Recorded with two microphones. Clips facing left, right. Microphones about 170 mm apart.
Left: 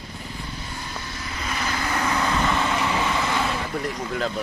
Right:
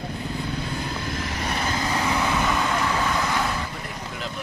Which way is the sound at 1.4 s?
30° right (ahead or behind).